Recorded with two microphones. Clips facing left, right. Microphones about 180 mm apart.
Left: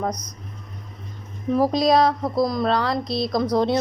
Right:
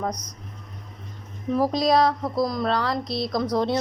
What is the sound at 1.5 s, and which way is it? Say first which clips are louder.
Speech: left 2 dB; 20° left (ahead or behind).